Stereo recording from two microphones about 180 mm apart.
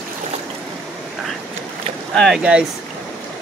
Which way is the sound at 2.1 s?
Centre (ahead or behind).